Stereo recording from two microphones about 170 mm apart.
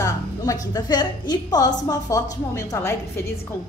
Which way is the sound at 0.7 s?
25° left (ahead or behind).